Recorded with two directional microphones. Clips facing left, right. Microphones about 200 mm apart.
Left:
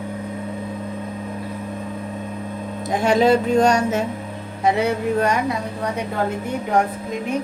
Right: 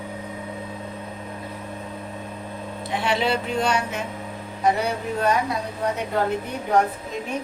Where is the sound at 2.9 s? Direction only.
45° left (ahead or behind).